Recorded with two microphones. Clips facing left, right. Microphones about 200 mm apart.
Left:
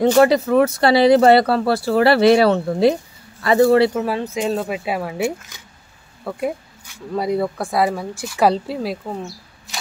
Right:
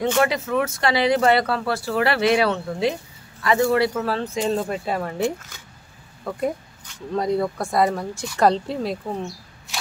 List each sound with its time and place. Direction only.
0.0 s speech: 35° left (ahead or behind)
4.0 s speech: 15° left (ahead or behind)